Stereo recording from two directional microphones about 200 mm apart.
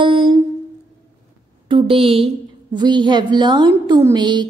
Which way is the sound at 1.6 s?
25° right (ahead or behind).